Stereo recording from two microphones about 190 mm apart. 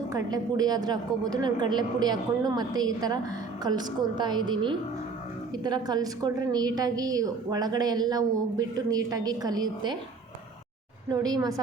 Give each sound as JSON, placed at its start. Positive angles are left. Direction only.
{"t": 0.1, "sound": "a woman's voice", "side_deg": -20}
{"t": 5.6, "sound": "a woman's voice", "side_deg": -20}
{"t": 11.1, "sound": "a woman's voice", "side_deg": -20}